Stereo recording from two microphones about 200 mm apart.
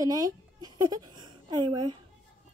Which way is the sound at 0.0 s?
15° right (ahead or behind).